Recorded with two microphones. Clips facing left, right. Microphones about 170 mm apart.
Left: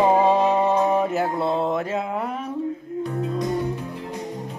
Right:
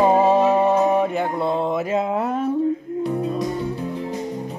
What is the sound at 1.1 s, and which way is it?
Mantra, 5° left (ahead or behind).